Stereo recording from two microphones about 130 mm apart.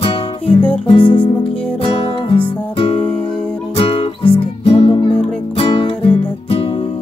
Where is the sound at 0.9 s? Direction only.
40° left (ahead or behind).